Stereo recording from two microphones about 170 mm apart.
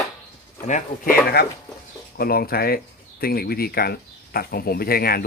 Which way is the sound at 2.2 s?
60° left (ahead or behind).